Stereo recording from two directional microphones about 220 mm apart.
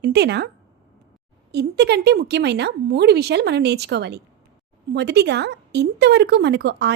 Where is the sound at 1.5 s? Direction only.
50° right (ahead or behind).